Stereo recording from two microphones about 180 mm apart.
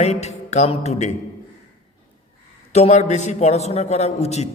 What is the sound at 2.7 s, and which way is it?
A man's voice, 35° left (ahead or behind).